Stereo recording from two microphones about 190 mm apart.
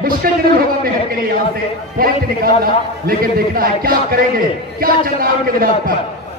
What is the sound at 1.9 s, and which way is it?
A man's voice, 50° right (ahead or behind).